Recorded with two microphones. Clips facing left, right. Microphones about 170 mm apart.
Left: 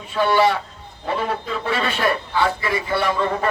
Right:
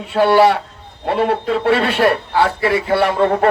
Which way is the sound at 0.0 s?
70° right (ahead or behind).